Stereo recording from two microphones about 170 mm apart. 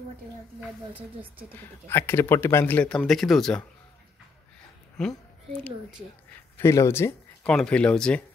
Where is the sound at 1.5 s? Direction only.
15° left (ahead or behind).